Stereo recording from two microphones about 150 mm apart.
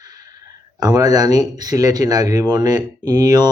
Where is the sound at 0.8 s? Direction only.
25° right (ahead or behind).